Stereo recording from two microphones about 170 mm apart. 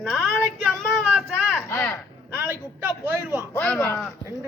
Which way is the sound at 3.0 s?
15° right (ahead or behind).